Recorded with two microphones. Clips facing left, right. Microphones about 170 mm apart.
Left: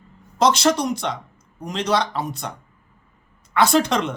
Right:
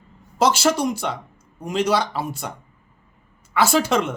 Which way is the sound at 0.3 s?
5° right (ahead or behind).